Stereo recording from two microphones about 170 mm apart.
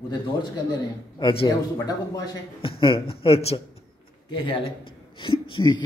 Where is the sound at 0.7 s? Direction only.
30° left (ahead or behind).